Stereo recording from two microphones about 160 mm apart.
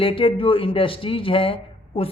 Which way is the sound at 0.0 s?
35° left (ahead or behind).